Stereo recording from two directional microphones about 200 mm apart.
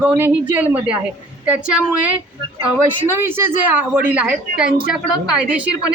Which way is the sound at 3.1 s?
10° right (ahead or behind).